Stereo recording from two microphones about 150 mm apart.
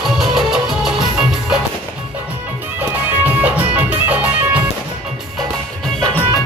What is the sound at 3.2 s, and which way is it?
Music, 10° right (ahead or behind).